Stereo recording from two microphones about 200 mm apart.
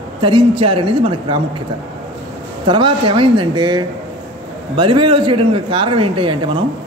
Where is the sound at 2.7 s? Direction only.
25° right (ahead or behind).